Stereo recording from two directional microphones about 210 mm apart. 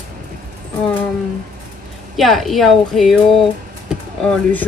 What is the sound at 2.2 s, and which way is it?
Speech, centre (ahead or behind).